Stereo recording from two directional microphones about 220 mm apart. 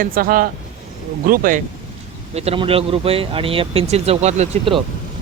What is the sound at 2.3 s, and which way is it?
Speech, 25° right (ahead or behind).